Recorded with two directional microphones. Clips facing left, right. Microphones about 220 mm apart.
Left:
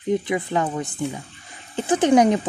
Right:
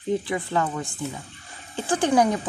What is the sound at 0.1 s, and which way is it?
Speech, 20° left (ahead or behind).